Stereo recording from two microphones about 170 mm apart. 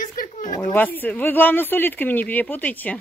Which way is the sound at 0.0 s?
55° left (ahead or behind).